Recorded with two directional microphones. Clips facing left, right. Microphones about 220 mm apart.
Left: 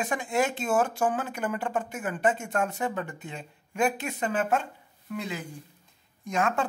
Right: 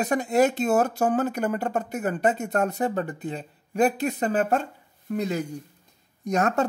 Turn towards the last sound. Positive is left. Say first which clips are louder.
# right 4 dB
turn(degrees=-40)  # may be behind; listen again after turning